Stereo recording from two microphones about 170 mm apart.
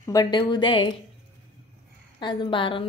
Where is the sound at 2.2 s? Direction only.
30° left (ahead or behind).